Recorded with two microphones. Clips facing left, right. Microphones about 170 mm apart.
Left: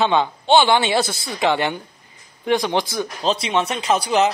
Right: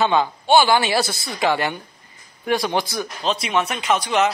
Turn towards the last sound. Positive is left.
turn(degrees=30)  # may be behind; listen again after turning